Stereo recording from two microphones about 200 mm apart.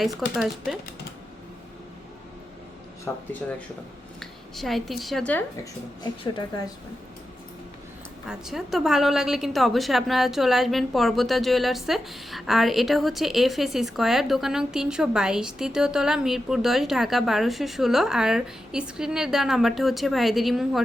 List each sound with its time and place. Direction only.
0.0 s a woman's voice: centre (ahead or behind)
3.1 s speech: 10° left (ahead or behind)
6.0 s speech: 20° left (ahead or behind)
8.3 s a woman's voice: centre (ahead or behind)